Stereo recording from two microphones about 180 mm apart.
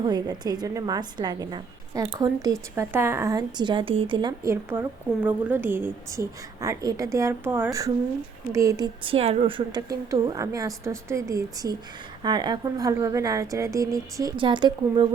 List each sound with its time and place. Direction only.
0.0 s a woman's voice: 25° right (ahead or behind)